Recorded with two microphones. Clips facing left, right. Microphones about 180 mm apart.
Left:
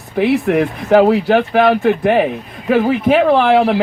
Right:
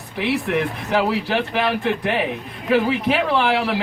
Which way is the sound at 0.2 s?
45° left (ahead or behind).